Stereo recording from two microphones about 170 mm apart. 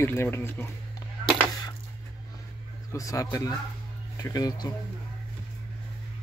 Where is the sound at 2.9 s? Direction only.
20° left (ahead or behind).